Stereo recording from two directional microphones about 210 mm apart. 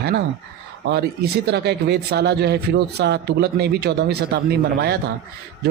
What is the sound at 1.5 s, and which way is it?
Speech, 50° right (ahead or behind).